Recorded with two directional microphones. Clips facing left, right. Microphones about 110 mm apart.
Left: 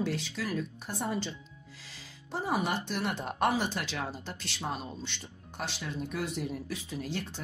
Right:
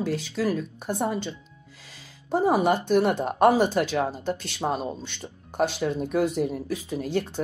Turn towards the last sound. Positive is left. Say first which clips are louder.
# right 10 dB
turn(degrees=-50)  # may be behind; listen again after turning